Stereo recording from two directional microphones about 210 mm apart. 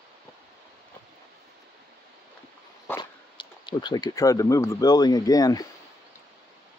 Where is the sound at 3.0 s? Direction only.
20° left (ahead or behind).